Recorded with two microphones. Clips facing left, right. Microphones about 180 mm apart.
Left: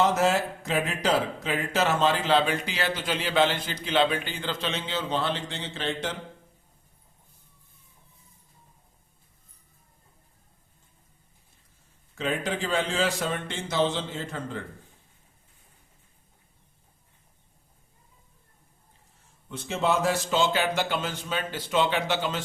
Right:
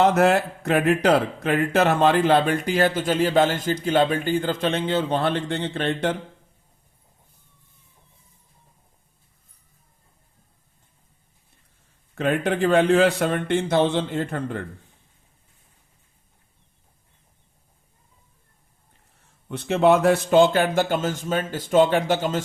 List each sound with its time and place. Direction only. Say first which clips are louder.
0.0 s speech: right 5 dB; 60° right (ahead or behind)
12.1 s speech: right 7 dB; 60° right (ahead or behind)
19.5 s speech: right 9 dB; 60° right (ahead or behind); by 22.4 s 45° right (ahead or behind)